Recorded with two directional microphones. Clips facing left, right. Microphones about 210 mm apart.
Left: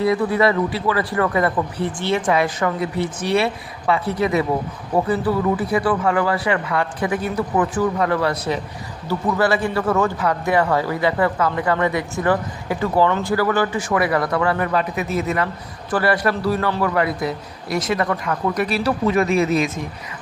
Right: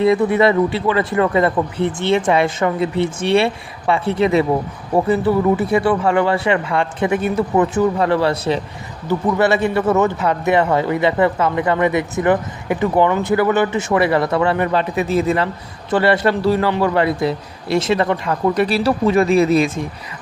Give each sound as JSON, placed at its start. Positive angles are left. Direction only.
{"t": 0.0, "sound": "a man's voice", "side_deg": -25}